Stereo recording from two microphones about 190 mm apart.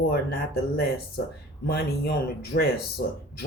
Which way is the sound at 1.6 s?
55° left (ahead or behind).